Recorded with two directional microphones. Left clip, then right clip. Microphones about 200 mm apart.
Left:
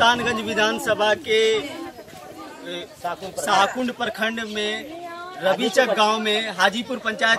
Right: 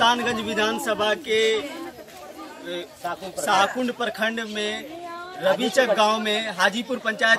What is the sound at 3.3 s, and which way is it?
A man's voice, centre (ahead or behind).